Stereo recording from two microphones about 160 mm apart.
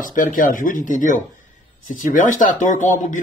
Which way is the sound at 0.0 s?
55° left (ahead or behind).